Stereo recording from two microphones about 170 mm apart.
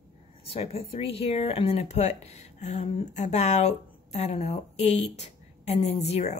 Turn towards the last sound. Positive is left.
turn(degrees=40)  # may be behind; listen again after turning